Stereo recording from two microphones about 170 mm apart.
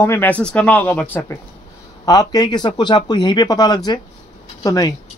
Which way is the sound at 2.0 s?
20° left (ahead or behind).